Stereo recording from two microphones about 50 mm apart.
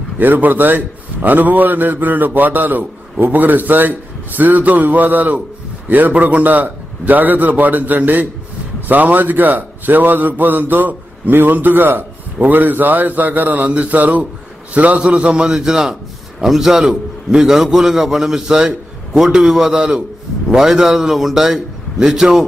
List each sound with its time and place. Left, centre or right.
0.2 s a man's voice: right; by 15.5 s centre
15.5 s a man's voice: centre